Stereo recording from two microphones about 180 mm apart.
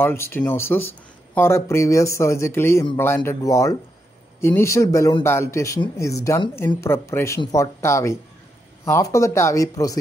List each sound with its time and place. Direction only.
0.0 s speech: 15° left (ahead or behind)